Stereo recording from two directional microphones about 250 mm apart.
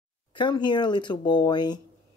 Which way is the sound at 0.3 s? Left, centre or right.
Centre.